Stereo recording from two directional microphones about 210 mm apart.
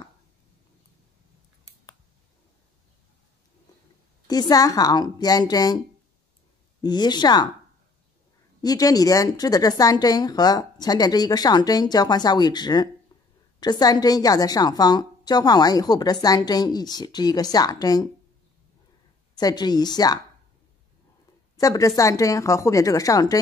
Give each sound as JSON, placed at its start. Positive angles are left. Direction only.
{"t": 4.3, "sound": "a woman's voice", "side_deg": 20}
{"t": 6.8, "sound": "a woman's voice", "side_deg": 20}
{"t": 8.6, "sound": "a woman's voice", "side_deg": 15}
{"t": 19.3, "sound": "a woman's voice", "side_deg": 20}
{"t": 21.5, "sound": "a woman's voice", "side_deg": 15}